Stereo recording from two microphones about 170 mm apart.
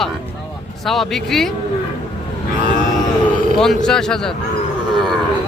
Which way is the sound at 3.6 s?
5° left (ahead or behind).